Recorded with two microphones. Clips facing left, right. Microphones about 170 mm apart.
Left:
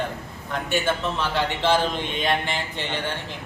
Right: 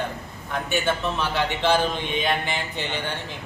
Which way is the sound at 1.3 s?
Centre (ahead or behind).